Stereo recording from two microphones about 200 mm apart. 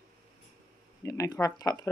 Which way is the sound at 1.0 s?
15° left (ahead or behind).